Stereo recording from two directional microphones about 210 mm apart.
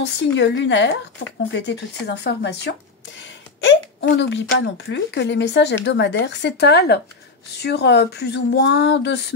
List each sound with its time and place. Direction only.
0.0 s speech: 55° left (ahead or behind)